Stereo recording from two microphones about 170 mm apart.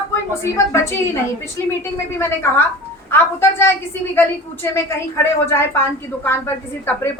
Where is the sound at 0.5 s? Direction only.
15° left (ahead or behind).